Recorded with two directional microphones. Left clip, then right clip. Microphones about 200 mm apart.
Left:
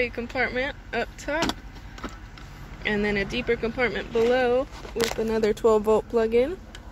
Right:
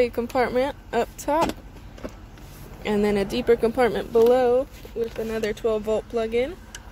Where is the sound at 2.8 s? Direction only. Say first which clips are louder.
Right 2 dB; 25° right (ahead or behind).